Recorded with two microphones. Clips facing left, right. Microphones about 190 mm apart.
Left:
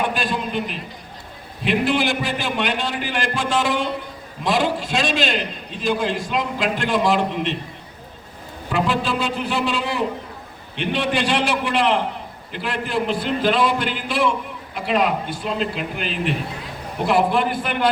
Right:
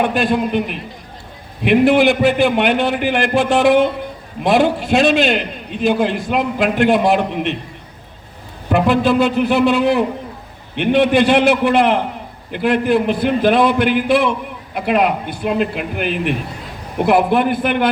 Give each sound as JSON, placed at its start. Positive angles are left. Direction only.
{"t": 0.1, "sound": "a man's voice", "side_deg": -60}
{"t": 8.7, "sound": "a man's voice", "side_deg": -60}